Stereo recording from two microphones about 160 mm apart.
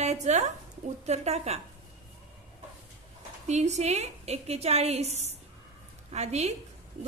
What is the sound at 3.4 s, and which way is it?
A woman's voice, 45° right (ahead or behind).